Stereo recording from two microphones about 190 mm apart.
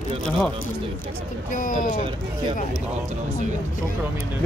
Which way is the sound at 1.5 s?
45° left (ahead or behind).